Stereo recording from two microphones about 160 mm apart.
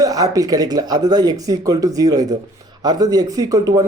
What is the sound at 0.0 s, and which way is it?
Speech, 20° right (ahead or behind).